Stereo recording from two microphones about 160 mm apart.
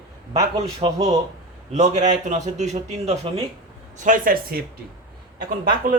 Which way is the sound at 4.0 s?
60° right (ahead or behind).